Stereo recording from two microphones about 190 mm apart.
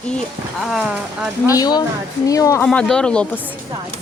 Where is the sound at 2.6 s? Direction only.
5° left (ahead or behind).